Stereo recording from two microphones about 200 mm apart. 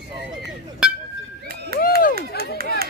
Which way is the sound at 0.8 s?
5° right (ahead or behind).